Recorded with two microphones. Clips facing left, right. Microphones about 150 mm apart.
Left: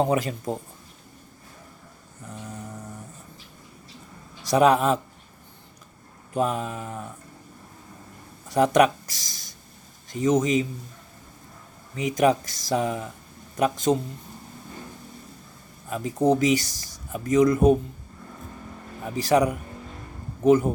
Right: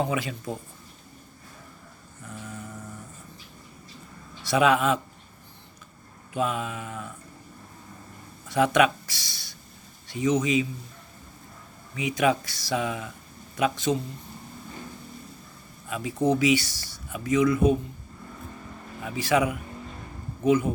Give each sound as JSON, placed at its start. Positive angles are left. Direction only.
{"t": 0.0, "sound": "speech", "side_deg": 45}
{"t": 2.4, "sound": "a sound", "side_deg": 40}
{"t": 4.4, "sound": "speech", "side_deg": 40}
{"t": 6.3, "sound": "speech", "side_deg": 40}
{"t": 8.4, "sound": "speech", "side_deg": 40}
{"t": 11.9, "sound": "speech", "side_deg": 40}
{"t": 15.9, "sound": "speech", "side_deg": 45}
{"t": 19.0, "sound": "speech", "side_deg": 40}